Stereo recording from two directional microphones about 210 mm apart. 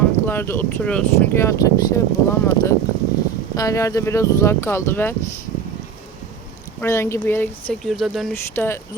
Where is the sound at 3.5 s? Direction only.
15° left (ahead or behind).